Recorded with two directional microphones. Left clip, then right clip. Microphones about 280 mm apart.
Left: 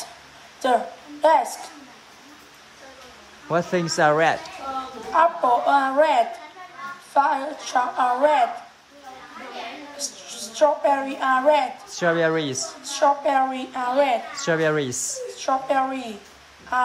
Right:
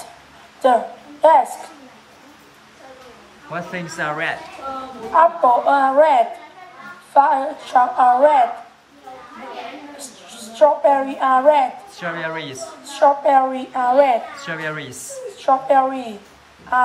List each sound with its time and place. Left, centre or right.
0.6 s a woman's voice: centre
3.5 s speech: centre
5.1 s a woman's voice: centre
9.9 s a woman's voice: centre
12.0 s speech: centre
12.8 s a woman's voice: centre
14.4 s speech: centre
15.3 s a woman's voice: centre